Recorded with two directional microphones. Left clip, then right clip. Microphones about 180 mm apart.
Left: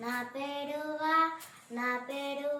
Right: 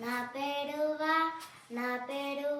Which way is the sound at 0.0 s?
5° right (ahead or behind).